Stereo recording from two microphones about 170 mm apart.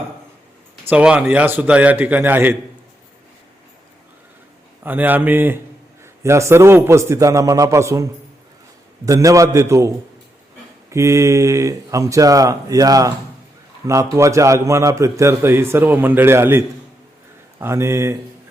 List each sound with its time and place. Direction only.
0.9 s a man's voice: 5° right (ahead or behind)
4.8 s a man's voice: 10° right (ahead or behind)